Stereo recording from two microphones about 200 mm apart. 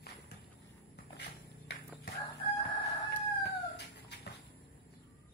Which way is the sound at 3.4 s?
55° left (ahead or behind).